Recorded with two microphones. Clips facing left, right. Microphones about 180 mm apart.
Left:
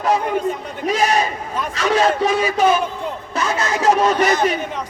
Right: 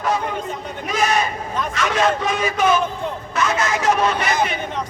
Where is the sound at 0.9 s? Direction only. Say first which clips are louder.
Left 3 dB; 35° left (ahead or behind).